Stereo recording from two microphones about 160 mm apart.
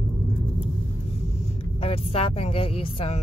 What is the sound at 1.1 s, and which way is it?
Speech, 35° left (ahead or behind).